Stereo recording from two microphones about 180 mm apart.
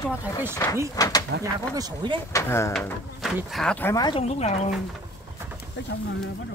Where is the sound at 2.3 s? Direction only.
15° left (ahead or behind).